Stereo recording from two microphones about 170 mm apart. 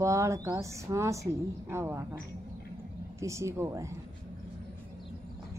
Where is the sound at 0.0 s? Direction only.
20° right (ahead or behind).